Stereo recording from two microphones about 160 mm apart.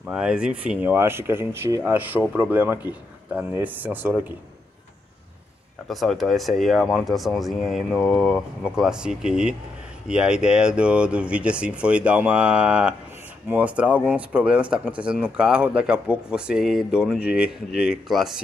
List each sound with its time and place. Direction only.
0.0 s speech: 5° right (ahead or behind)
5.9 s speech: centre (ahead or behind)